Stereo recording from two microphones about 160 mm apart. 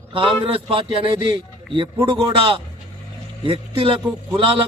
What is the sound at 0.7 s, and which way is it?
Speech, 35° right (ahead or behind).